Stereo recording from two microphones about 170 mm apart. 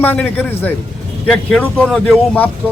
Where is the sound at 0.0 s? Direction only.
10° left (ahead or behind).